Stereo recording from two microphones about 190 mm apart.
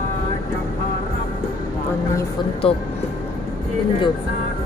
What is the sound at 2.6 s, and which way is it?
Speech, 30° left (ahead or behind).